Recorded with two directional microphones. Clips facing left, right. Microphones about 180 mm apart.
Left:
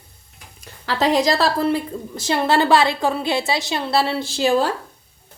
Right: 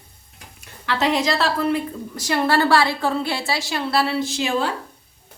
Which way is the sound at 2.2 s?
25° left (ahead or behind).